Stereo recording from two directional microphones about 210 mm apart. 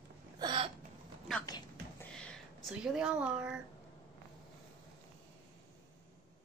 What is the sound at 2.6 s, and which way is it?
Speech, 5° right (ahead or behind).